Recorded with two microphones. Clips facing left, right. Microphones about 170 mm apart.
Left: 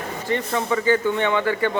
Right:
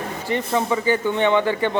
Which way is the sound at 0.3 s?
15° right (ahead or behind).